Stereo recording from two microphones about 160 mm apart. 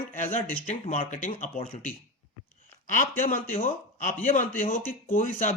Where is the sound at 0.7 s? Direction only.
50° left (ahead or behind).